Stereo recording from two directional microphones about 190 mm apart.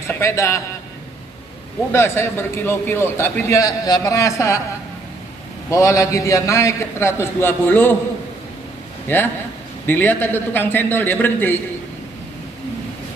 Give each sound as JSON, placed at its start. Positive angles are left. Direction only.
{"t": 0.1, "sound": "a man's voice", "side_deg": 15}
{"t": 1.9, "sound": "a man's voice", "side_deg": 15}
{"t": 5.7, "sound": "a man's voice", "side_deg": 15}
{"t": 9.8, "sound": "a man's voice", "side_deg": 10}